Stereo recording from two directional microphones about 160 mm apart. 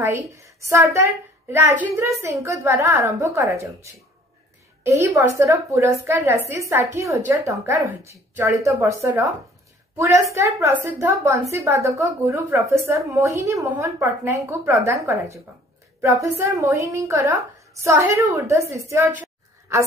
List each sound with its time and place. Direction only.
0.0 s a woman's voice: 20° right (ahead or behind)